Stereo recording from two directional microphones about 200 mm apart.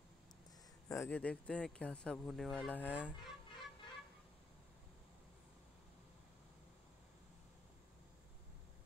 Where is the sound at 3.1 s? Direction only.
25° left (ahead or behind).